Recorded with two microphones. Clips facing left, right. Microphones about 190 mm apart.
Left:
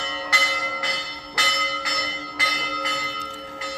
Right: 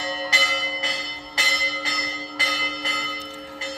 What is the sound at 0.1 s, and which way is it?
Church bell, 25° right (ahead or behind).